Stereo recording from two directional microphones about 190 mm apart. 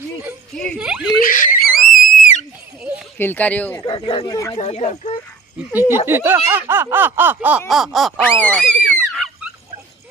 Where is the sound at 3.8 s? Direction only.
25° left (ahead or behind).